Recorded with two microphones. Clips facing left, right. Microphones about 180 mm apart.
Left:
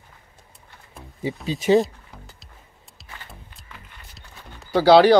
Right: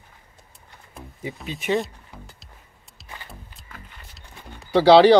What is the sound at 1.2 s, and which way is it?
Speech, 35° left (ahead or behind).